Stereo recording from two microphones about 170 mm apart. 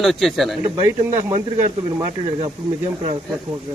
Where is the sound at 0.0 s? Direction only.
Centre (ahead or behind).